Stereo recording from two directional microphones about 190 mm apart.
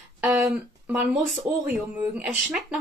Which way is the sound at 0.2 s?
5° right (ahead or behind).